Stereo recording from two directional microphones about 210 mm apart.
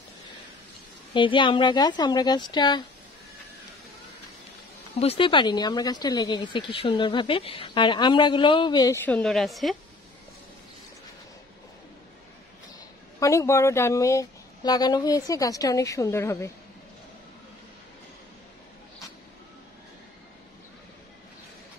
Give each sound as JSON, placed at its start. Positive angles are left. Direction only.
{"t": 1.1, "sound": "speech", "side_deg": 25}
{"t": 4.9, "sound": "speech", "side_deg": 25}
{"t": 13.2, "sound": "speech", "side_deg": 15}